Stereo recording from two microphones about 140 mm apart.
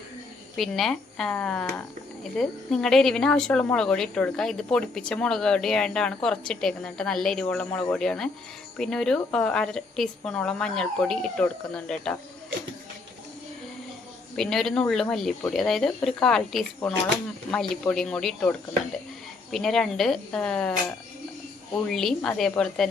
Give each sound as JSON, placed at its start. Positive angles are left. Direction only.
{"t": 0.5, "sound": "a woman's voice", "side_deg": 0}
{"t": 14.3, "sound": "a woman's voice", "side_deg": 0}
{"t": 21.8, "sound": "a woman's voice", "side_deg": 5}